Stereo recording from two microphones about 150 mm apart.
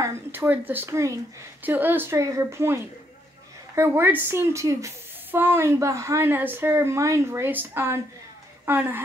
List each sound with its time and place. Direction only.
0.0 s a woman's voice: 15° right (ahead or behind)